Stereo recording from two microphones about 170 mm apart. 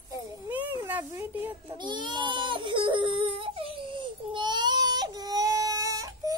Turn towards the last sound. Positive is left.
turn(degrees=-20)  # may be behind; listen again after turning